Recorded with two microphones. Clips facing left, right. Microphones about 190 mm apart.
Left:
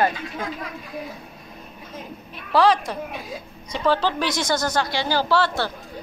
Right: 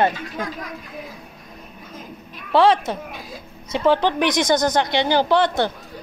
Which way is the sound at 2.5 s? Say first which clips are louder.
Right 2 dB; 25° right (ahead or behind).